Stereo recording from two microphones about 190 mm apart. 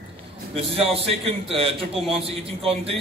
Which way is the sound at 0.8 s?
30° right (ahead or behind).